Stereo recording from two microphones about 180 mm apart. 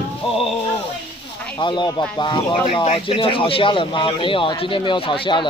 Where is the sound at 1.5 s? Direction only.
25° left (ahead or behind).